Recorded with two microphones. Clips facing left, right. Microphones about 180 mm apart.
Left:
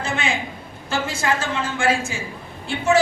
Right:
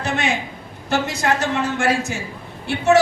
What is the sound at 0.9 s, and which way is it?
A woman's voice, 65° right (ahead or behind).